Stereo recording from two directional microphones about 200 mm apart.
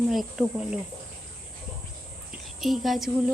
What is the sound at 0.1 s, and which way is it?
Speech, centre (ahead or behind).